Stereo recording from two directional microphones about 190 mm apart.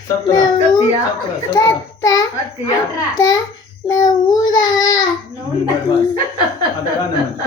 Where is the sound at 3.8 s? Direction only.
20° left (ahead or behind).